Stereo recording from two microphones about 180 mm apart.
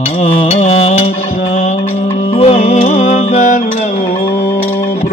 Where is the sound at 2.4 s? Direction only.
35° left (ahead or behind).